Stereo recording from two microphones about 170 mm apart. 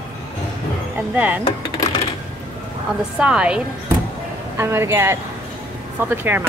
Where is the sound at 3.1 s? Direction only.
5° right (ahead or behind).